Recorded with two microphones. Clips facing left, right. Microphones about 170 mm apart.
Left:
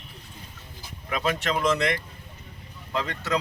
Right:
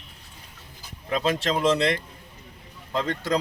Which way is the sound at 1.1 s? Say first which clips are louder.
Right 2 dB; 30° right (ahead or behind).